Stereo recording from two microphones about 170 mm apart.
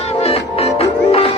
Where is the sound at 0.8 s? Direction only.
35° left (ahead or behind).